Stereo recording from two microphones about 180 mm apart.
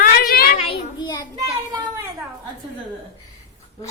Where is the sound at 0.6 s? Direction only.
30° left (ahead or behind).